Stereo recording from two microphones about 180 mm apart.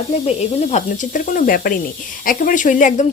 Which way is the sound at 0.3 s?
40° left (ahead or behind).